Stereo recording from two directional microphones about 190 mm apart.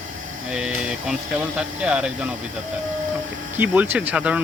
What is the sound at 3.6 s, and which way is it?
Speech, 10° right (ahead or behind).